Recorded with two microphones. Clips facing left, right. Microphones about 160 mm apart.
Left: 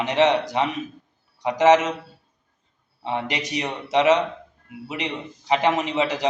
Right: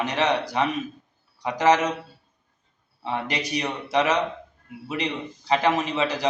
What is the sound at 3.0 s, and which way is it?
A man's voice, 20° left (ahead or behind).